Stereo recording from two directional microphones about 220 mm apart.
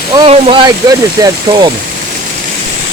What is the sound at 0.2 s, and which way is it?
Speech, 25° right (ahead or behind).